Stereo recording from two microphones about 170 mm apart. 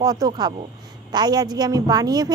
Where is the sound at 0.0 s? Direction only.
20° right (ahead or behind).